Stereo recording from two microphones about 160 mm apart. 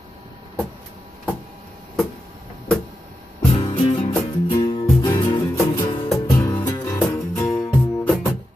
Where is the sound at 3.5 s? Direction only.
35° left (ahead or behind); by 7.7 s 20° left (ahead or behind).